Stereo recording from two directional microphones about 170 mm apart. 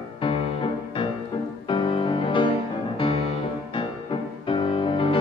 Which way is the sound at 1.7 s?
30° left (ahead or behind).